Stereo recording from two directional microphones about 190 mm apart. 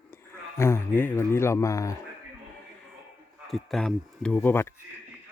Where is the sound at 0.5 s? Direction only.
15° left (ahead or behind).